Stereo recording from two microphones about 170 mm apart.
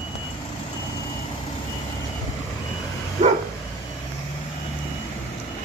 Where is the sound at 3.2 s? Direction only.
40° right (ahead or behind).